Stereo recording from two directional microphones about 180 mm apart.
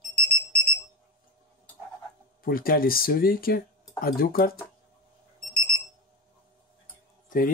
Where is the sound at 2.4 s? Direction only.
55° left (ahead or behind).